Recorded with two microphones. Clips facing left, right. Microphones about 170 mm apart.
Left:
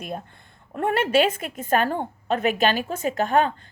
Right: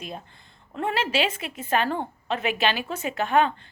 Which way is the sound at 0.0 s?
55° left (ahead or behind).